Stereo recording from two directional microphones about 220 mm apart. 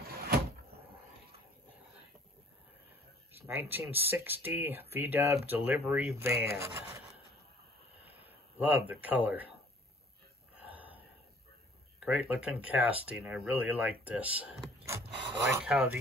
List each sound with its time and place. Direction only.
0.0 s cupboard open or close: 45° right (ahead or behind)
3.4 s speech: 10° right (ahead or behind)
8.0 s a sound: 10° right (ahead or behind)
10.6 s gasp: 5° right (ahead or behind)
12.0 s speech: 5° right (ahead or behind)
15.6 s speech: 5° right (ahead or behind)